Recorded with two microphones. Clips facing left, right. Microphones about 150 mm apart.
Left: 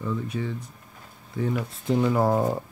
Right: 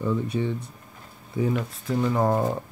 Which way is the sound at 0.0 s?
30° right (ahead or behind).